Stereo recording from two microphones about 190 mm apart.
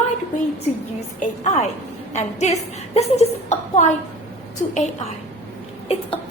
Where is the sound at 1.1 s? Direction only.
40° left (ahead or behind).